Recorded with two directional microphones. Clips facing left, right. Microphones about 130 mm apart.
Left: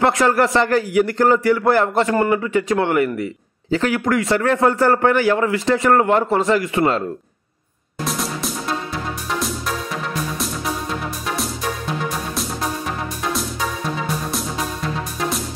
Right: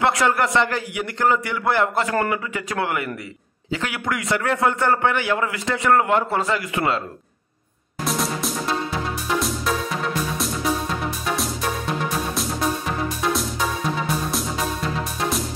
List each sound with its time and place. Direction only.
0.0 s a man's voice: 35° left (ahead or behind)
8.0 s music: centre (ahead or behind)